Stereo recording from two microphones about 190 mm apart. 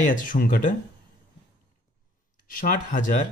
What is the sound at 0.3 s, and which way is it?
Speech, 50° left (ahead or behind).